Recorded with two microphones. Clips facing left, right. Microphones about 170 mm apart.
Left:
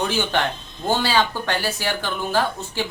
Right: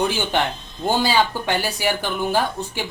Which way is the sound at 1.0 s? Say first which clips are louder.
Right 1 dB; 15° right (ahead or behind).